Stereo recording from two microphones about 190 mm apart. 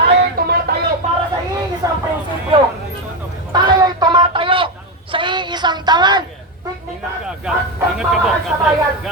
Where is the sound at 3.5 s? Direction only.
20° right (ahead or behind).